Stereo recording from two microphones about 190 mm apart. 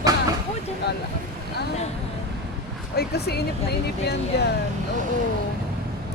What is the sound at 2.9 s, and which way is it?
Speech, 55° left (ahead or behind).